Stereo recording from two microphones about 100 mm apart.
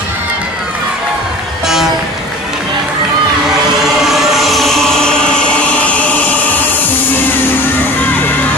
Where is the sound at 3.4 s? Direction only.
5° right (ahead or behind); by 6.8 s 15° left (ahead or behind).